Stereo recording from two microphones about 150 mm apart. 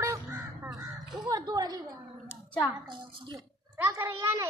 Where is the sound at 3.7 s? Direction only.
15° right (ahead or behind).